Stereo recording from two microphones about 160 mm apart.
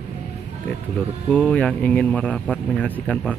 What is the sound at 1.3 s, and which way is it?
Speech, 10° left (ahead or behind).